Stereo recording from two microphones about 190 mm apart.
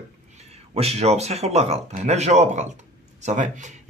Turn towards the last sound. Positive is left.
turn(degrees=-40)  # may be behind; listen again after turning